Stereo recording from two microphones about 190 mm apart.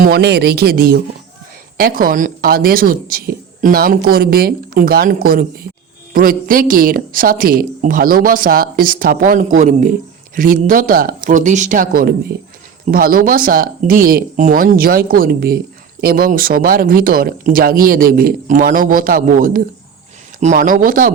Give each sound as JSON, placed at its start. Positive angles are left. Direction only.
{"t": 0.0, "sound": "speech", "side_deg": -60}